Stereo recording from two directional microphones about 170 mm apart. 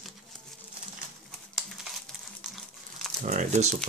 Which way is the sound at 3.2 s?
45° right (ahead or behind).